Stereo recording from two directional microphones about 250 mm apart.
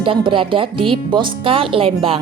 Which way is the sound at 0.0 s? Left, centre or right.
Centre.